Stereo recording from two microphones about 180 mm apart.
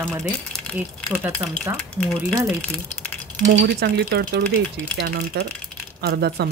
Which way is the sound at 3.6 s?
65° right (ahead or behind).